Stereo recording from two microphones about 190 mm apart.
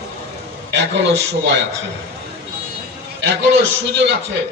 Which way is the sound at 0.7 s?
65° right (ahead or behind).